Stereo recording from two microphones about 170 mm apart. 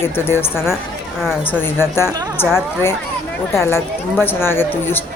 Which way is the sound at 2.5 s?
15° left (ahead or behind).